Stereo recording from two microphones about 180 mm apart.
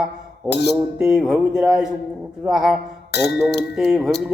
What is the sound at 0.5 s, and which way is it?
Speech, 70° left (ahead or behind).